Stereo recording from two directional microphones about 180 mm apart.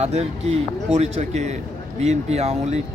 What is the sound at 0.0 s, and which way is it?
Speech, 40° right (ahead or behind).